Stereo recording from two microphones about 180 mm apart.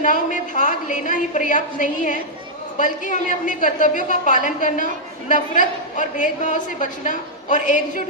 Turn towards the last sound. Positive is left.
turn(degrees=45)  # may be behind; listen again after turning